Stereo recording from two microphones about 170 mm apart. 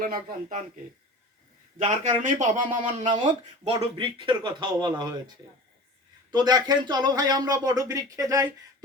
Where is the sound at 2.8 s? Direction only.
30° right (ahead or behind).